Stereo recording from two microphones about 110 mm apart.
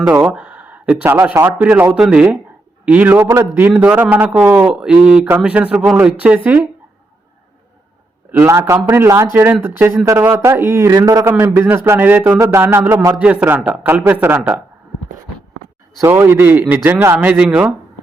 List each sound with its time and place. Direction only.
0.3 s a man's voice: 10° right (ahead or behind)
8.3 s a man's voice: 20° right (ahead or behind)
11.3 s a man's voice: 20° right (ahead or behind)
13.1 s a man's voice: 15° right (ahead or behind)
16.0 s a man's voice: 20° right (ahead or behind)